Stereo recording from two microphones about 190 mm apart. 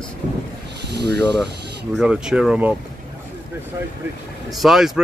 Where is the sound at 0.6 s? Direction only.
60° right (ahead or behind).